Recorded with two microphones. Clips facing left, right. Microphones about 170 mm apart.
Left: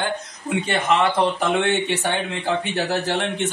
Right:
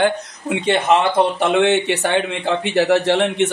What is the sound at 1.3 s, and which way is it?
A man's voice, 80° right.